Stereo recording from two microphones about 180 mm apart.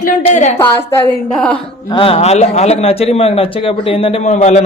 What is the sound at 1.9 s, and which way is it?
Speech, 30° left (ahead or behind).